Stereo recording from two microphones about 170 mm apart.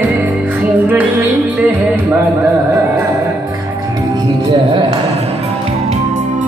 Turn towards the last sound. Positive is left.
turn(degrees=-35)  # may be behind; listen again after turning